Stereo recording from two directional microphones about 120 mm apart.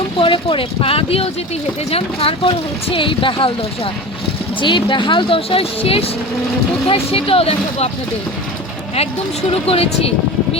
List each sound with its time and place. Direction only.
0.2 s speech: 45° left (ahead or behind)
4.6 s speech: 40° left (ahead or behind)
9.5 s speech: 55° left (ahead or behind)